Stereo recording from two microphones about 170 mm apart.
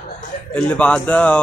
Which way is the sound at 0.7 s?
10° left (ahead or behind).